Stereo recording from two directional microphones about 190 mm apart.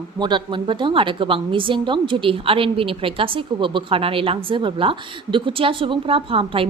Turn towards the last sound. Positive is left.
turn(degrees=-30)  # may be behind; listen again after turning